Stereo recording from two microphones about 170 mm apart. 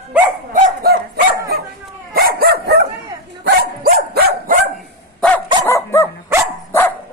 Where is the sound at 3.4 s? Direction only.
60° right (ahead or behind).